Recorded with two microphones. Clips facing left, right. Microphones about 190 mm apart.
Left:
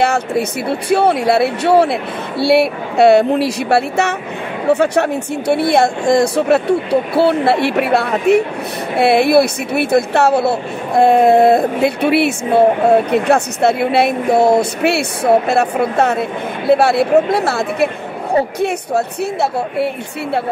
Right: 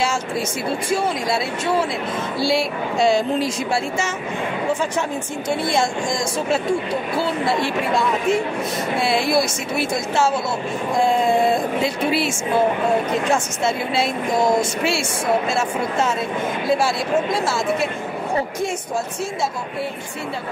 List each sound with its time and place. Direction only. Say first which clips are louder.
0.0 s speech: left 7 dB; 60° left (ahead or behind)